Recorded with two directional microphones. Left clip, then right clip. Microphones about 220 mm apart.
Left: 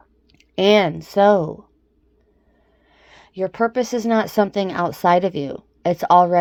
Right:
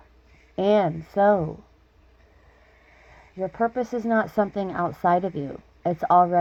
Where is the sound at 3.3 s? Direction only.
45° left (ahead or behind).